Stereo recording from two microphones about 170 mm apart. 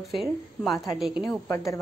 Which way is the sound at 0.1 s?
Centre (ahead or behind).